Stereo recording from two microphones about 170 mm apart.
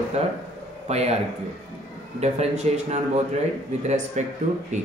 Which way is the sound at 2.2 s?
40° right (ahead or behind).